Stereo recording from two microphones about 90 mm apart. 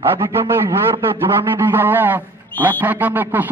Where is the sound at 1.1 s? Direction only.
25° right (ahead or behind).